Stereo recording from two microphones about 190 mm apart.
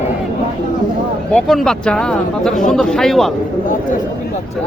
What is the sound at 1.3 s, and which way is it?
Speech, centre (ahead or behind).